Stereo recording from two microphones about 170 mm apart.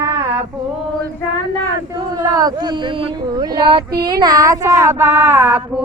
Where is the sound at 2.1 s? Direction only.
20° right (ahead or behind).